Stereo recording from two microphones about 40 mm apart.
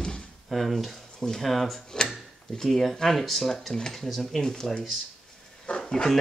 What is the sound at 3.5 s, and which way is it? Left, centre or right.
Speech, centre.